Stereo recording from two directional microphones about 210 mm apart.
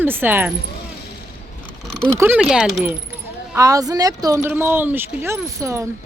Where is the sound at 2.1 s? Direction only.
10° right (ahead or behind).